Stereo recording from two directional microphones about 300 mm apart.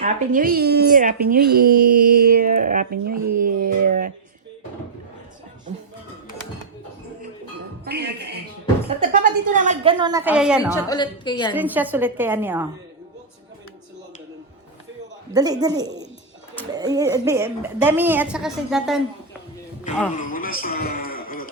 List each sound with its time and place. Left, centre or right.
0.0 s speech: right
3.2 s speech: right
3.4 s speech: right
7.9 s a woman's voice: right; by 10.8 s centre
10.8 s a woman's voice: centre
11.5 s a woman's voice: centre
15.3 s a woman's voice: centre
20.1 s a sound: left